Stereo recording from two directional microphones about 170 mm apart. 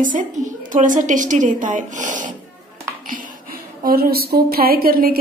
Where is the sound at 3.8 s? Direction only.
60° right (ahead or behind).